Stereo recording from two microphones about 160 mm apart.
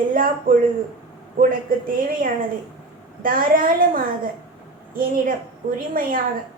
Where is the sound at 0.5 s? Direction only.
60° right (ahead or behind).